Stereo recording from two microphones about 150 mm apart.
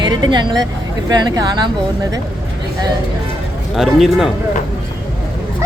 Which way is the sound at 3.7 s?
Centre (ahead or behind).